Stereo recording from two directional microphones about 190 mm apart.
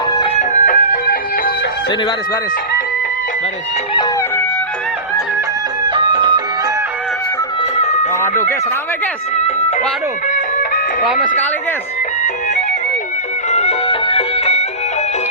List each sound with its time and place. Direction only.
0.6 s music: 45° left (ahead or behind)
5.9 s music: 25° right (ahead or behind)
8.2 s speech: 15° left (ahead or behind)
11.0 s speech: centre (ahead or behind)
13.5 s music: 35° left (ahead or behind)